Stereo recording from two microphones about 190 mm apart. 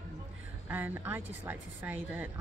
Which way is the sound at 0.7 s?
10° right (ahead or behind).